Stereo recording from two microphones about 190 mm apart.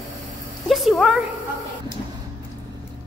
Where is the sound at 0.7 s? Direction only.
Centre (ahead or behind).